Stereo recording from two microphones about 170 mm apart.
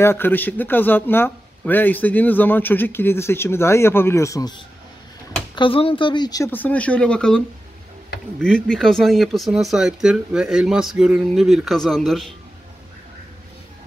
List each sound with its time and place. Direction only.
0.0 s a man's voice: 15° left (ahead or behind)
5.6 s speech: 30° left (ahead or behind)
6.5 s a man's voice: 10° left (ahead or behind)